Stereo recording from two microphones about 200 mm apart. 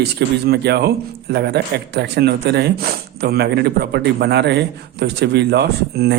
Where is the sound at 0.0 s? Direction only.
55° right (ahead or behind).